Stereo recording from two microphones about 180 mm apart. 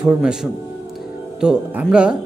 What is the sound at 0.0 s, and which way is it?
A man's voice, 5° right (ahead or behind).